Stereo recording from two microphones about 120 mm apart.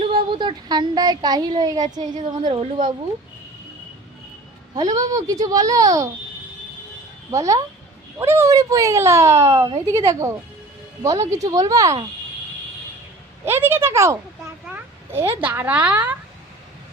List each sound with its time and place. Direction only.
0.1 s speech: 40° right (ahead or behind)
4.7 s speech: 30° right (ahead or behind)
7.3 s speech: 25° right (ahead or behind)
13.4 s speech: 20° right (ahead or behind)
14.7 s a sound: 20° right (ahead or behind)
15.4 s speech: 15° right (ahead or behind)